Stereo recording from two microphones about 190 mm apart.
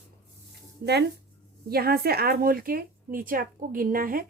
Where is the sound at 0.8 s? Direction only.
60° right (ahead or behind).